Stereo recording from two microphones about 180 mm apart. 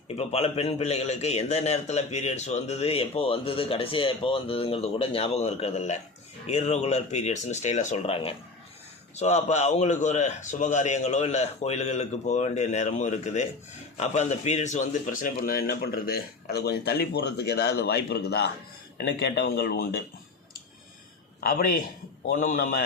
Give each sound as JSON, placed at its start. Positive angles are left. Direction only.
{"t": 0.1, "sound": "a man's voice", "side_deg": 35}
{"t": 21.4, "sound": "a man's voice", "side_deg": 55}